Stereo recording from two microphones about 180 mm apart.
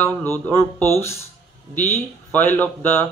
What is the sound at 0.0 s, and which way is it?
Speech, 10° left (ahead or behind).